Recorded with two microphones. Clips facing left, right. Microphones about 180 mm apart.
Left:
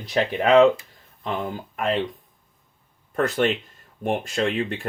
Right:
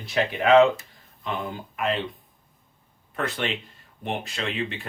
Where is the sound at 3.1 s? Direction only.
45° left (ahead or behind).